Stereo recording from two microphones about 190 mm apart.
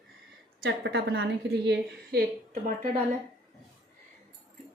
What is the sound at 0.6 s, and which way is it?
A woman's voice, 55° right (ahead or behind).